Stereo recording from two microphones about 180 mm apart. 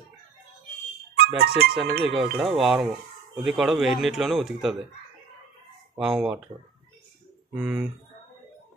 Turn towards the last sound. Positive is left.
turn(degrees=-5)  # may be behind; listen again after turning